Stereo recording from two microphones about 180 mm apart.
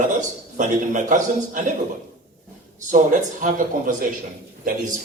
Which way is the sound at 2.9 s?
45° right (ahead or behind).